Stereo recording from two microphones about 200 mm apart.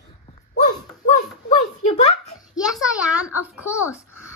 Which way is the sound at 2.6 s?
5° right (ahead or behind).